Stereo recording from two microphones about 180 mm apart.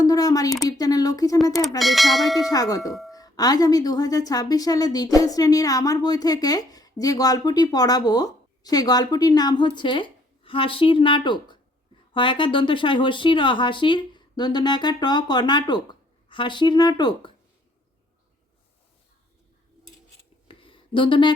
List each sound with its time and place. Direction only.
0.0 s a woman's voice: 20° left (ahead or behind)
1.8 s speech: centre (ahead or behind)
2.4 s a woman's voice: 20° left (ahead or behind)
20.5 s a sound: 30° left (ahead or behind)